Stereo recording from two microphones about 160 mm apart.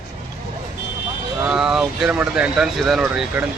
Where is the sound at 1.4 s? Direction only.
5° right (ahead or behind).